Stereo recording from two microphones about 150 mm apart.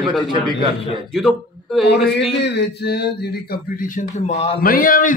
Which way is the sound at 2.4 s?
90° left.